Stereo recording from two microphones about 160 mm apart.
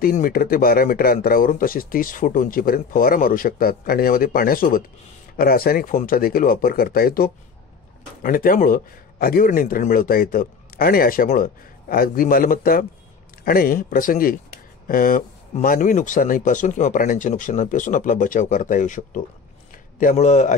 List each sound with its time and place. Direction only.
0.0 s a man's voice: 65° left (ahead or behind); by 20.5 s 45° left (ahead or behind)